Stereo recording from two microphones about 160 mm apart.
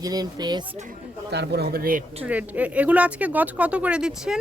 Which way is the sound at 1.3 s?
90° right.